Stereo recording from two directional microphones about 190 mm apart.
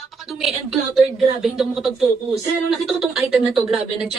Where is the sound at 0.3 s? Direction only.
Centre (ahead or behind).